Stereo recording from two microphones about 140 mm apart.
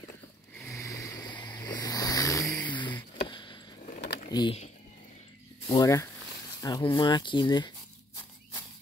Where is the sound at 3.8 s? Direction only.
65° left (ahead or behind).